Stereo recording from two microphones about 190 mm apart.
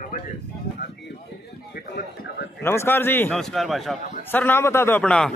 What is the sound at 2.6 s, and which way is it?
Speech, 15° left (ahead or behind).